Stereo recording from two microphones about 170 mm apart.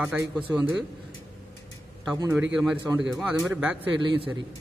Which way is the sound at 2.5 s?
5° right (ahead or behind).